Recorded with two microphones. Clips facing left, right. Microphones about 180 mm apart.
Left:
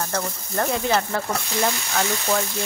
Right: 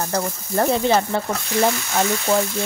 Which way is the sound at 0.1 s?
30° right (ahead or behind).